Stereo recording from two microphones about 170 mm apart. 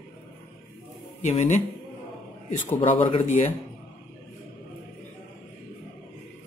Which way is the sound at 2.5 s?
35° left (ahead or behind).